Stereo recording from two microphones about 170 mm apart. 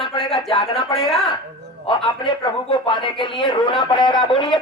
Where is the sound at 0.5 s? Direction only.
25° left (ahead or behind).